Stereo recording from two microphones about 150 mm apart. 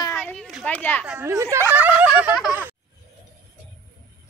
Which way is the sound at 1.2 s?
20° right (ahead or behind).